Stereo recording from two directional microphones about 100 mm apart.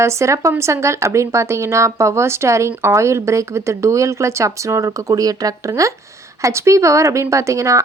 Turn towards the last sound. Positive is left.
turn(degrees=-30)  # may be behind; listen again after turning